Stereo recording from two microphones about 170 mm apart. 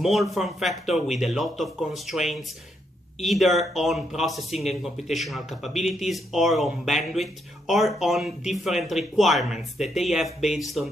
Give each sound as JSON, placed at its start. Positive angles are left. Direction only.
{"t": 0.0, "sound": "speech", "side_deg": 0}